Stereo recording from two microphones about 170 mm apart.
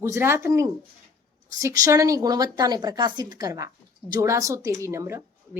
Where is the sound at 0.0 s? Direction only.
15° right (ahead or behind).